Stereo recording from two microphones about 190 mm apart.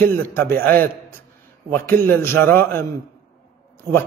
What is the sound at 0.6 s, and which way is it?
Speech, 50° right (ahead or behind).